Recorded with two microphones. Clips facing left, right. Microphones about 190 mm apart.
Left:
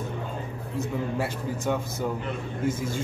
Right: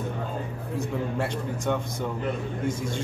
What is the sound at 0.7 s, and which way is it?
A man's voice, 5° left (ahead or behind).